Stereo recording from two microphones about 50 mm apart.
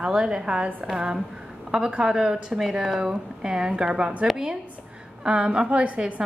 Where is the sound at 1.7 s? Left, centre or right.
Centre.